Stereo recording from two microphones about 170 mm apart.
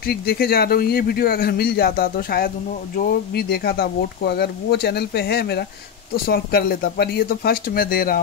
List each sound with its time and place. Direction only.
0.0 s speech: 65° left (ahead or behind)